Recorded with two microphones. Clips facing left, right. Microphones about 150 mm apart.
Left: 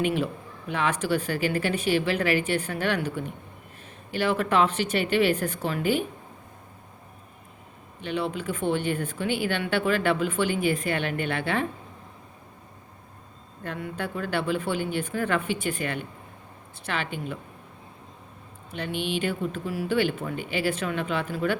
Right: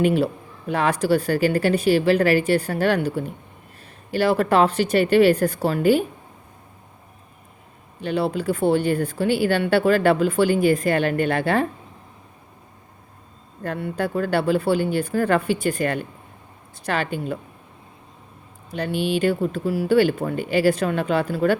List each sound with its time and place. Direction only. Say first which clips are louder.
0.0 s speech: right 6 dB; 35° right (ahead or behind)
8.0 s speech: right 6 dB; 35° right (ahead or behind)
13.6 s speech: right 7 dB; 35° right (ahead or behind)
18.7 s speech: right 6 dB; 40° right (ahead or behind)